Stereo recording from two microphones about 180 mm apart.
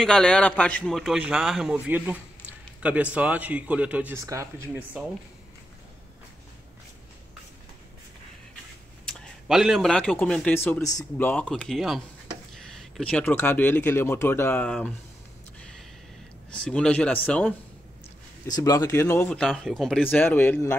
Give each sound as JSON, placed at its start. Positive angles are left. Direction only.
{"t": 0.0, "sound": "a man's voice", "side_deg": 5}
{"t": 9.0, "sound": "speech", "side_deg": 0}
{"t": 16.4, "sound": "speech", "side_deg": 5}
{"t": 18.5, "sound": "speech", "side_deg": 20}